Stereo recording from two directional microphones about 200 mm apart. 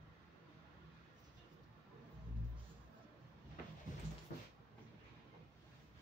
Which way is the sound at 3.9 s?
40° left (ahead or behind).